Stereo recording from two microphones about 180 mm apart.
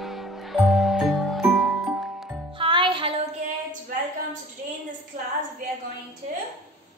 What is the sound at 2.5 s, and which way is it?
Music, 30° right (ahead or behind).